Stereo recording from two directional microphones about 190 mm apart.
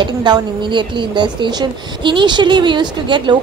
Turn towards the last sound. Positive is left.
turn(degrees=-25)  # may be behind; listen again after turning